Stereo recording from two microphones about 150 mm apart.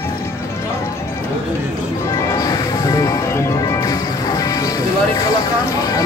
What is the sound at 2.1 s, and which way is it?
Music, 25° left (ahead or behind).